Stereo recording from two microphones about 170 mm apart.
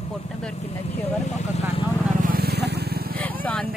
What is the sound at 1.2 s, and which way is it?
Vehicle, 40° left (ahead or behind).